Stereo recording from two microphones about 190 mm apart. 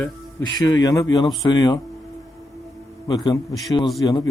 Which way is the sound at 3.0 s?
20° left (ahead or behind).